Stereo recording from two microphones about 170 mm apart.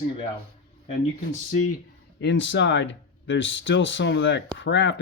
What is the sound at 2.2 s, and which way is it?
Speech, 90° left.